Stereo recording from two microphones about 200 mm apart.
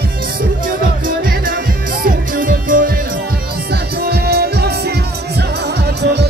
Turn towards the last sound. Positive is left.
turn(degrees=-55)  # may be behind; listen again after turning